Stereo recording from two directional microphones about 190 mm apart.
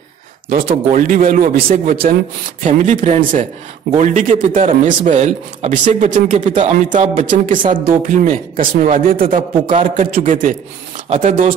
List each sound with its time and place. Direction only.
0.9 s a man's voice: 45° right (ahead or behind)
2.6 s a man's voice: 40° right (ahead or behind)